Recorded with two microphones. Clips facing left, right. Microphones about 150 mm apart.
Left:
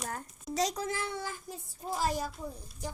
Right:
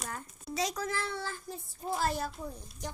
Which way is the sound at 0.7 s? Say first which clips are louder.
Even; 20° left (ahead or behind).